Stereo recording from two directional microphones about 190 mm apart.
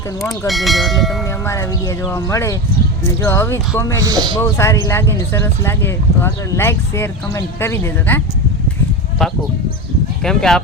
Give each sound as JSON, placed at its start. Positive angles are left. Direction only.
{"t": 0.4, "sound": "bell", "side_deg": 0}
{"t": 1.5, "sound": "speech", "side_deg": 15}
{"t": 4.0, "sound": "speech", "side_deg": -20}
{"t": 4.4, "sound": "speech", "side_deg": 15}
{"t": 10.2, "sound": "bell", "side_deg": 5}